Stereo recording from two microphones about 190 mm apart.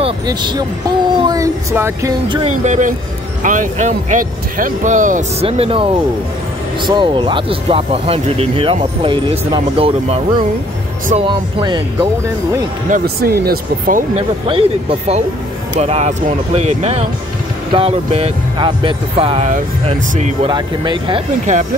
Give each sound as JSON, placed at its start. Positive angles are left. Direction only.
{"t": 0.0, "sound": "speech", "side_deg": -25}
{"t": 2.5, "sound": "speech", "side_deg": -40}
{"t": 12.9, "sound": "speech", "side_deg": -55}
{"t": 14.5, "sound": "speech", "side_deg": -30}